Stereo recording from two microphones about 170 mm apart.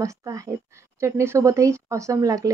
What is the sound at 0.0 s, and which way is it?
A woman's voice, 20° right (ahead or behind).